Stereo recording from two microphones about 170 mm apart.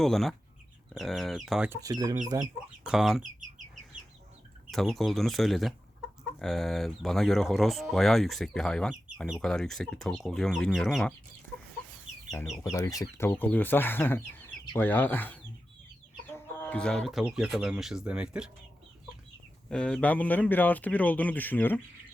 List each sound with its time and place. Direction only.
0.0 s speech: centre (ahead or behind)
1.7 s speech: 20° right (ahead or behind)
2.8 s speech: 5° right (ahead or behind)
4.7 s speech: centre (ahead or behind)
12.6 s speech: 15° left (ahead or behind); by 18.5 s 5° right (ahead or behind)
19.7 s speech: 5° left (ahead or behind)